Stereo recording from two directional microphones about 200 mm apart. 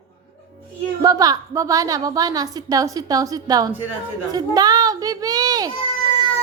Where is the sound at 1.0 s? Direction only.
20° right (ahead or behind).